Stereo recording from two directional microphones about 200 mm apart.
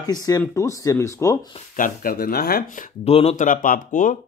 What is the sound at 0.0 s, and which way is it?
Speech, 20° left (ahead or behind).